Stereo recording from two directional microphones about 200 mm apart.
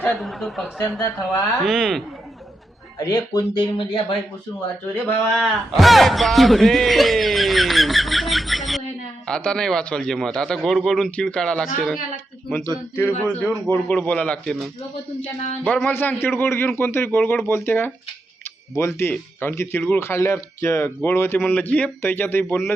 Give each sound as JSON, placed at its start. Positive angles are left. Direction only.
{"t": 0.0, "sound": "a man's voice", "side_deg": 0}
{"t": 3.0, "sound": "speech", "side_deg": 20}
{"t": 5.0, "sound": "a man's voice", "side_deg": 0}